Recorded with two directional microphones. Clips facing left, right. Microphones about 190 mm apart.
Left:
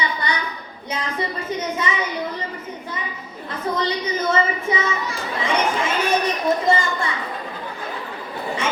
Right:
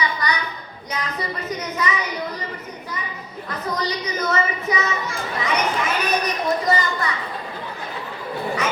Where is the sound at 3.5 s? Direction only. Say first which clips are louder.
Left 2 dB; 25° left (ahead or behind).